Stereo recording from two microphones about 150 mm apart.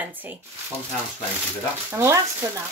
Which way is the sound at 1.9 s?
15° right (ahead or behind).